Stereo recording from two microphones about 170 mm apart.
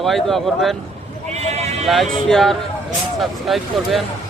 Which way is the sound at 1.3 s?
40° right (ahead or behind).